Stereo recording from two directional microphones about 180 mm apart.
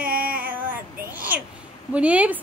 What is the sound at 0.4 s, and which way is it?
Child singing, 10° right (ahead or behind).